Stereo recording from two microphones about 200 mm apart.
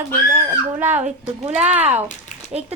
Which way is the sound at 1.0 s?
35° right (ahead or behind).